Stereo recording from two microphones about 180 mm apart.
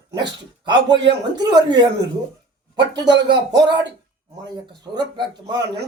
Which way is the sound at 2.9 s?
75° right (ahead or behind).